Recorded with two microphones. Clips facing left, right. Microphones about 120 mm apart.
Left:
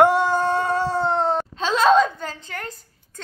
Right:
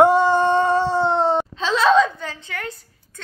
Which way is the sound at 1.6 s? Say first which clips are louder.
Left 1 dB; 45° left (ahead or behind).